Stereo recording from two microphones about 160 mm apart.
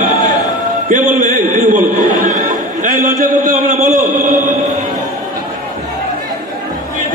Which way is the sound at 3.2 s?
55° right (ahead or behind).